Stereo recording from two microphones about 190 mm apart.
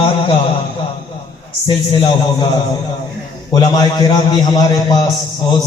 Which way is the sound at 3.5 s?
20° left (ahead or behind).